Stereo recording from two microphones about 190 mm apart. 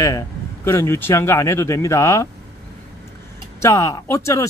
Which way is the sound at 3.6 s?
15° left (ahead or behind).